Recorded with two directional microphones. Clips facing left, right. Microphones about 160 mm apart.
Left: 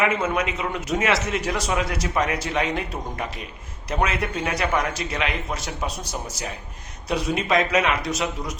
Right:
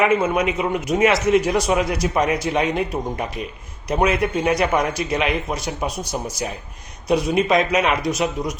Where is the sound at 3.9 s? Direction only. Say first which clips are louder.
Right 6 dB; 15° right (ahead or behind).